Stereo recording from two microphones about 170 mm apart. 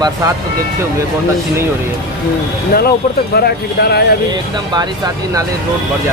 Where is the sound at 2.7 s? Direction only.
65° left (ahead or behind).